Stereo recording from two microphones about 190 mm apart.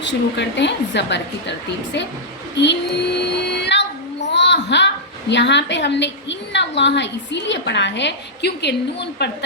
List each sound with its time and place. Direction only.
0.0 s a woman's voice: 70° left (ahead or behind)
2.6 s child singing: 65° left (ahead or behind)
4.3 s a sound: 65° left (ahead or behind)
5.3 s a woman's voice: 70° left (ahead or behind)